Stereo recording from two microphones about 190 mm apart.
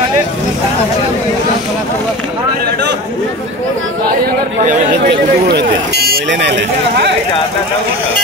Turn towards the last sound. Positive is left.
turn(degrees=-65)  # may be behind; listen again after turning